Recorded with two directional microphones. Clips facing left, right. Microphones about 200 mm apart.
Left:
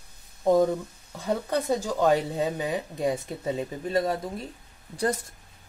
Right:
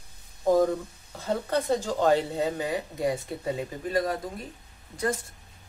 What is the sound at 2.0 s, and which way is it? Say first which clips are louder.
Speech: left 1 dB; 15° left (ahead or behind).